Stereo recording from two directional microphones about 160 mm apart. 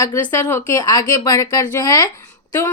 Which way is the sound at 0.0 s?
20° left (ahead or behind).